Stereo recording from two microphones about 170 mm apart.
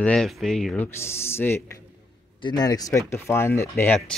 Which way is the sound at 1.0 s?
15° left (ahead or behind).